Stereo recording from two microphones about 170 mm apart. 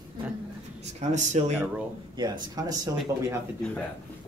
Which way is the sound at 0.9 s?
45° right (ahead or behind).